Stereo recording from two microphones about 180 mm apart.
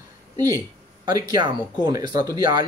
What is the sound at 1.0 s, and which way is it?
Speech, 20° right (ahead or behind).